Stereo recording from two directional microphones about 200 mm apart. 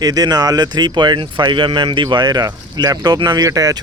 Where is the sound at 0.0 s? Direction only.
20° right (ahead or behind).